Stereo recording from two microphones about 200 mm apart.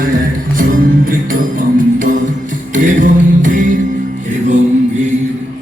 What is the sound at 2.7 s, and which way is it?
Music, 40° right (ahead or behind).